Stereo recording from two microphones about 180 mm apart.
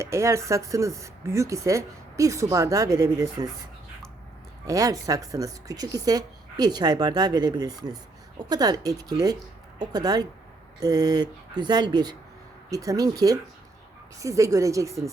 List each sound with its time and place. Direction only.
0.0 s speech: 15° right (ahead or behind)
4.6 s a woman's voice: 20° right (ahead or behind)